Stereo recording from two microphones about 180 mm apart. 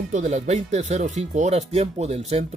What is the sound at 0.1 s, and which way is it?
Speech, 40° right (ahead or behind).